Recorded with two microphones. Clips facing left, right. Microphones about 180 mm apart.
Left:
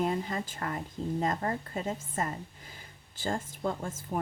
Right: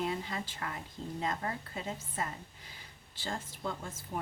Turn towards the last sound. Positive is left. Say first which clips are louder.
# left 6 dB
turn(degrees=45)  # may be behind; listen again after turning